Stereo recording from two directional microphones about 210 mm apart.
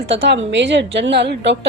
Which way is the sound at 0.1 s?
60° right (ahead or behind).